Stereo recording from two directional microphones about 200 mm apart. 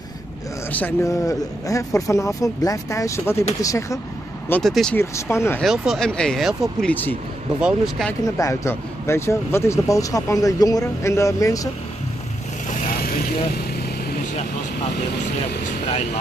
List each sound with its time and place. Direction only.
0.7 s speech: 10° left (ahead or behind)
4.5 s speech: 5° left (ahead or behind)
5.1 s speech: 15° left (ahead or behind)
5.6 s speech: centre (ahead or behind)
7.6 s speech: centre (ahead or behind)
8.4 s speech: 15° left (ahead or behind)
12.6 s vehicle: 45° left (ahead or behind)